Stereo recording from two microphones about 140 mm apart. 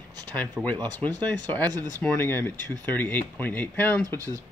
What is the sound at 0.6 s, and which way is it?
Speech, 10° right (ahead or behind).